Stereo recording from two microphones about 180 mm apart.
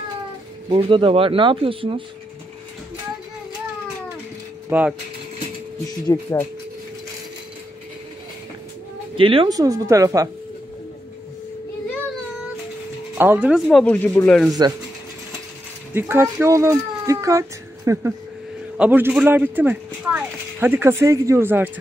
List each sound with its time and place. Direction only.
0.7 s speech: 30° right (ahead or behind)
4.6 s pulleys: 10° right (ahead or behind)
6.1 s speech: 20° left (ahead or behind)
9.1 s speech: 30° right (ahead or behind)
13.2 s speech: 10° right (ahead or behind)
13.7 s speech: 5° left (ahead or behind)
15.9 s speech: 10° right (ahead or behind)